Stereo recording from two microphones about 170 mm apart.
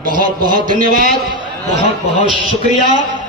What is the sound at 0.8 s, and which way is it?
Speech, 55° right (ahead or behind).